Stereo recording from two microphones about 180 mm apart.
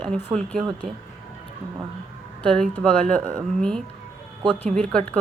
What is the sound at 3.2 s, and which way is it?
Speech, 50° right (ahead or behind).